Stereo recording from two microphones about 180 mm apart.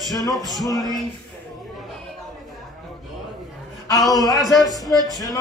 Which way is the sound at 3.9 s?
Centre (ahead or behind).